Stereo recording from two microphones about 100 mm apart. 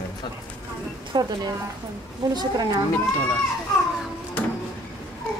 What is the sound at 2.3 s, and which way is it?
Speech, 40° right (ahead or behind).